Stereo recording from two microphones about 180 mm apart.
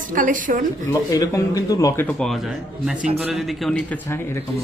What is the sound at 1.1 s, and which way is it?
Speech, 20° left (ahead or behind).